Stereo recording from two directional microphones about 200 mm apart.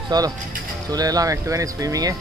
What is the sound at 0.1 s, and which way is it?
Speech, 20° right (ahead or behind).